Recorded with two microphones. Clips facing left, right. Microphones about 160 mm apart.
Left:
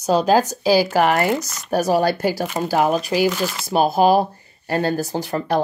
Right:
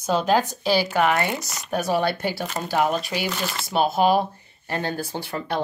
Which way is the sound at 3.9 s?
40° left (ahead or behind).